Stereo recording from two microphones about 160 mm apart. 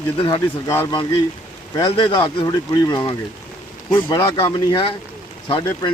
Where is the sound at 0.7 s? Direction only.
15° left (ahead or behind).